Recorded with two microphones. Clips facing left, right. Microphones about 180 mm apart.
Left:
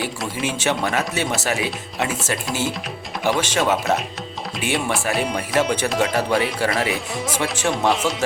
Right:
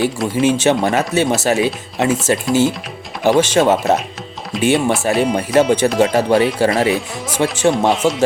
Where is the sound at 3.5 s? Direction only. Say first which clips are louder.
Right 7 dB; 40° right (ahead or behind).